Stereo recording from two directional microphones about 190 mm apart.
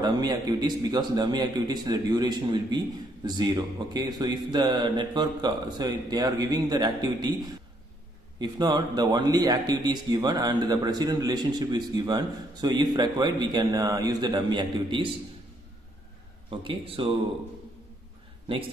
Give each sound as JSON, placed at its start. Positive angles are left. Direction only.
{"t": 0.0, "sound": "a man's voice", "side_deg": -20}
{"t": 8.4, "sound": "a man's voice", "side_deg": -20}
{"t": 16.4, "sound": "a man's voice", "side_deg": -30}